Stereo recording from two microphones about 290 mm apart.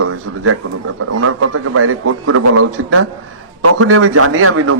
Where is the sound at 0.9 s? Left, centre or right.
Right.